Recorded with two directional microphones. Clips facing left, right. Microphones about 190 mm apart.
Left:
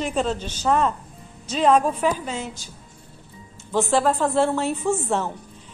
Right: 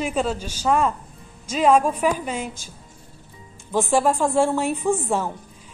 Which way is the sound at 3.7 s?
15° right (ahead or behind).